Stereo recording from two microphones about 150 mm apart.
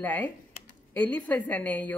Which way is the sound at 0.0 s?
10° left (ahead or behind).